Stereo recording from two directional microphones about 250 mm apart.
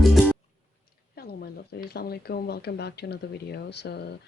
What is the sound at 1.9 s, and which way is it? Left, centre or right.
Speech, left.